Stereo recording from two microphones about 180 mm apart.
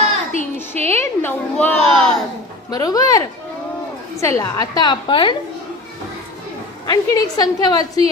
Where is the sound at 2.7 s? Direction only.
20° left (ahead or behind).